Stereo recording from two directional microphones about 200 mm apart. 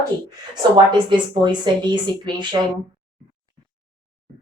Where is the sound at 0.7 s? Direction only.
20° right (ahead or behind).